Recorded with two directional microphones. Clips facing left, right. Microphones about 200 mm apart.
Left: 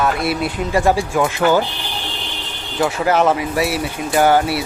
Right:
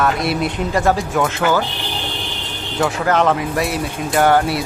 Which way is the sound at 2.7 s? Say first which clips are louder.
Left 1 dB; 5° left (ahead or behind).